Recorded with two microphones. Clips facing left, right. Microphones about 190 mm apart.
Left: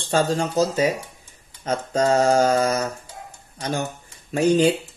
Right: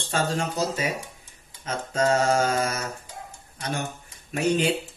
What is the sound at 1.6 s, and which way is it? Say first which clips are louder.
Speech: left 4 dB; 35° left (ahead or behind).